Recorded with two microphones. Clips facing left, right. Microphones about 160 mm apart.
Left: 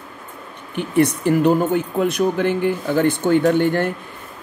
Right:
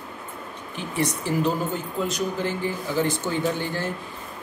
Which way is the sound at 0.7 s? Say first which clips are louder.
Left 9 dB; 60° left (ahead or behind).